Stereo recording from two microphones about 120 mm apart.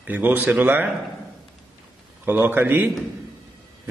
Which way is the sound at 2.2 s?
15° right (ahead or behind).